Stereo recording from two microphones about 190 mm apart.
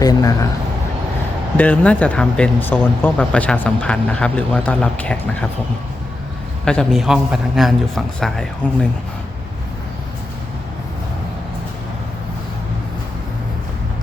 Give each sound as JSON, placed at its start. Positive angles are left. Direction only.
{"t": 0.0, "sound": "a man's voice", "side_deg": 20}
{"t": 1.5, "sound": "speech", "side_deg": 10}
{"t": 6.7, "sound": "a man's voice", "side_deg": 0}